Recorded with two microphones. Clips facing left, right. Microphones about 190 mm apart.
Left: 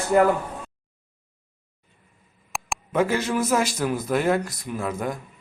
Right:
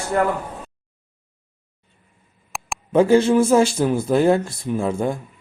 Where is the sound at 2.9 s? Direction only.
30° right (ahead or behind).